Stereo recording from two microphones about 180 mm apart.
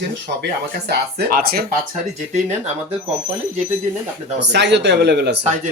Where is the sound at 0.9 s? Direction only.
55° right (ahead or behind).